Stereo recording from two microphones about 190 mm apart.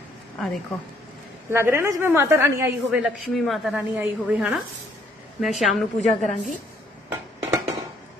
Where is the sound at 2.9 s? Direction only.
Centre (ahead or behind).